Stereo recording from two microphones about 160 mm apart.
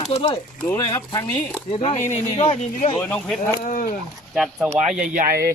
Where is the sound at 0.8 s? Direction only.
25° left (ahead or behind).